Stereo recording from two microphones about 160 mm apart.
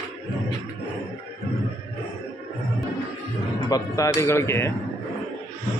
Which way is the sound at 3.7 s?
20° left (ahead or behind).